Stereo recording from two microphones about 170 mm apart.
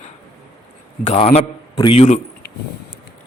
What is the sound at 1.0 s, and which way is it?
Speech, 40° left (ahead or behind).